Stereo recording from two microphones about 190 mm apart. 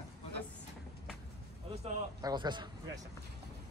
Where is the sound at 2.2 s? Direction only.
25° right (ahead or behind).